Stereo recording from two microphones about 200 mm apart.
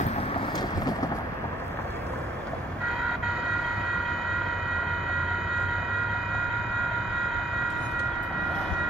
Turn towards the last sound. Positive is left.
turn(degrees=0)  # may be behind; listen again after turning